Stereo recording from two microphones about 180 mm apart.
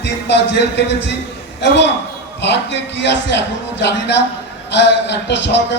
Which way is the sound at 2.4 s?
75° left (ahead or behind).